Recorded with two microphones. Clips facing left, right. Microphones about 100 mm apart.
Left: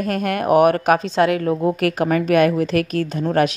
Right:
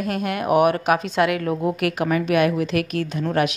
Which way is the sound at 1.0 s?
30° left (ahead or behind).